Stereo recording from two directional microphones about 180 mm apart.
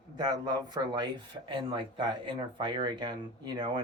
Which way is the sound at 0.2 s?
25° right (ahead or behind).